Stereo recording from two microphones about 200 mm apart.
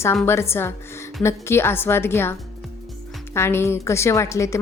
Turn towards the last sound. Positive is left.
turn(degrees=15)  # may be behind; listen again after turning